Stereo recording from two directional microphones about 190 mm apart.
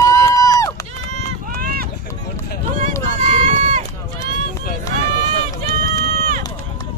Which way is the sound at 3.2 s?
40° right (ahead or behind).